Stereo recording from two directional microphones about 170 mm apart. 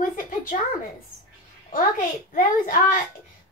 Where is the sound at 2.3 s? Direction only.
55° left (ahead or behind).